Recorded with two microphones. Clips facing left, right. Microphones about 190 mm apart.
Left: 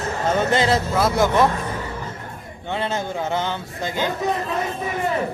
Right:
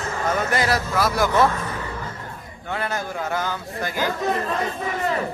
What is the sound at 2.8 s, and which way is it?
Speech, 25° left (ahead or behind).